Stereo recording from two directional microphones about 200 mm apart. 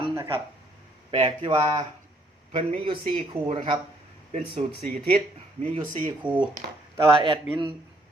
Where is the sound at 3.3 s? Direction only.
30° right (ahead or behind).